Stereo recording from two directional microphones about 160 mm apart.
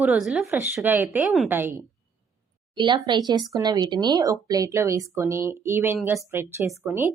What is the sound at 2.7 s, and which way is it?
A woman's voice, 30° right (ahead or behind).